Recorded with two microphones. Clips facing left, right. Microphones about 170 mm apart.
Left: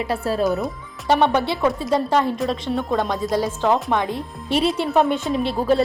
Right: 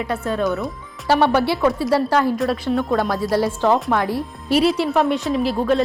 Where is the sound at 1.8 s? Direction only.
20° left (ahead or behind).